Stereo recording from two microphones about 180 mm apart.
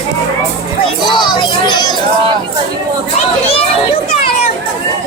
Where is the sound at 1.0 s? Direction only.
25° left (ahead or behind).